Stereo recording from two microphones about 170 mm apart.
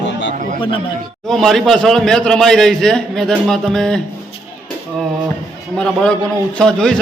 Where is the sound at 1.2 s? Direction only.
Centre (ahead or behind).